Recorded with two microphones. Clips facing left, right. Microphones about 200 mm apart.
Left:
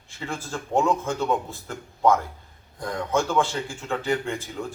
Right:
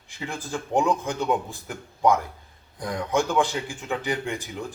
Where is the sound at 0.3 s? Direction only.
15° right (ahead or behind).